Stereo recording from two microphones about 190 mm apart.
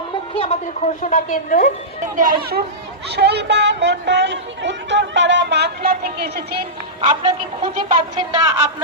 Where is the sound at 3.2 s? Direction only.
60° right (ahead or behind).